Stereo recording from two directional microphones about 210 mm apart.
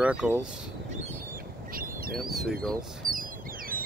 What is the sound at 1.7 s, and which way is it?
Duck, 45° right (ahead or behind).